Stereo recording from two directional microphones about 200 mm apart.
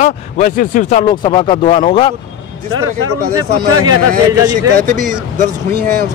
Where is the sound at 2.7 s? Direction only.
90° right.